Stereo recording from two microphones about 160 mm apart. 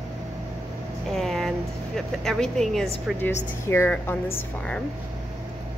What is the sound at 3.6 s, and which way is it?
Speech, 15° left (ahead or behind).